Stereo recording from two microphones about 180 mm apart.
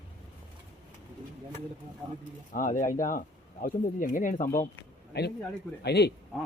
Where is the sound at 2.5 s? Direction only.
50° left (ahead or behind).